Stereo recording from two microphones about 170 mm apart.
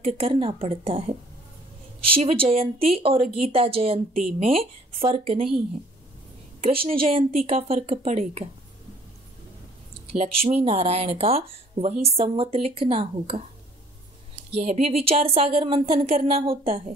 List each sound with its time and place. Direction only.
0.0 s speech: 35° right (ahead or behind)
6.6 s speech: 35° right (ahead or behind)
10.0 s speech: 40° right (ahead or behind)
14.5 s speech: 40° right (ahead or behind)